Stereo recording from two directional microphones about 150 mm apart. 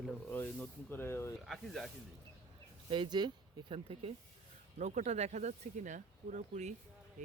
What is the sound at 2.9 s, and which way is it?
Speech, 30° right (ahead or behind).